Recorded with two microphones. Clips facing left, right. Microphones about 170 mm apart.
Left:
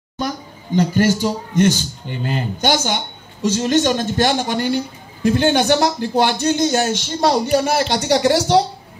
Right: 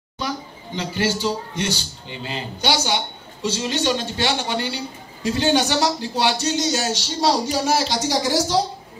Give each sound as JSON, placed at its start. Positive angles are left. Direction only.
{"t": 0.2, "sound": "a man's voice", "side_deg": 45}